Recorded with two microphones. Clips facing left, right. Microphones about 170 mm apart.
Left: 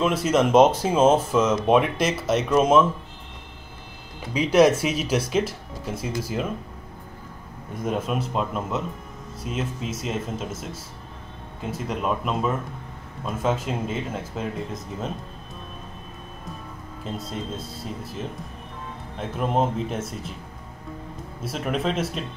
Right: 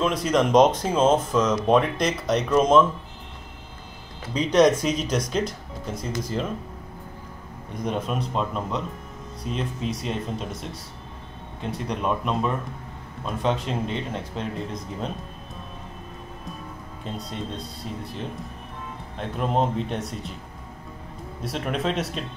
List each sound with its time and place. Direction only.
0.0 s speech: 5° left (ahead or behind)
4.3 s speech: 10° left (ahead or behind)
7.7 s speech: 5° left (ahead or behind)
17.0 s speech: centre (ahead or behind)
21.4 s speech: 5° left (ahead or behind)